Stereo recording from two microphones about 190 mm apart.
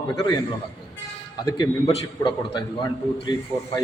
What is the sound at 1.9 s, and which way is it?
Speech, 25° left (ahead or behind).